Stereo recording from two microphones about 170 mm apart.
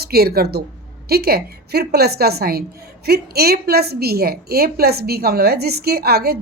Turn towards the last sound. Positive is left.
turn(degrees=-65)  # may be behind; listen again after turning